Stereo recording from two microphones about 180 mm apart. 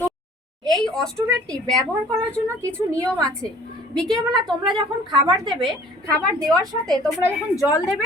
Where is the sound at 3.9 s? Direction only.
Centre (ahead or behind).